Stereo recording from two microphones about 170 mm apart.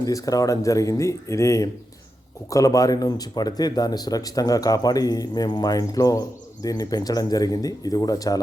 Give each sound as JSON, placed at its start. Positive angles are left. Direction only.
{"t": 0.0, "sound": "speech", "side_deg": 20}